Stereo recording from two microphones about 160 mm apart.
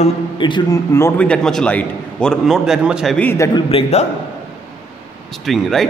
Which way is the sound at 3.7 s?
40° left (ahead or behind).